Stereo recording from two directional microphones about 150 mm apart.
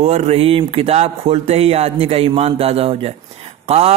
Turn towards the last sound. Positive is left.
turn(degrees=-45)  # may be behind; listen again after turning